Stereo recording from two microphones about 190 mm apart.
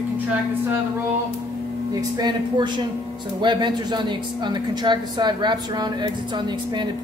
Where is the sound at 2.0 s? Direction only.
20° right (ahead or behind).